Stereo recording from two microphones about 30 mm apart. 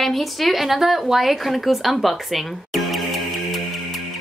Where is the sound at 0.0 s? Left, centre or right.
Centre.